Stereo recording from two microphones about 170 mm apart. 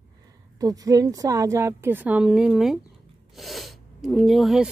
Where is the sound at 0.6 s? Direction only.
20° right (ahead or behind).